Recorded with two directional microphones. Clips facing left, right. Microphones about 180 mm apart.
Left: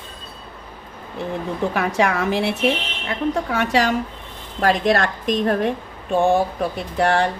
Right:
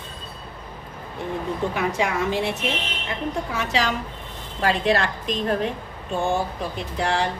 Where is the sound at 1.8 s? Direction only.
65° left (ahead or behind).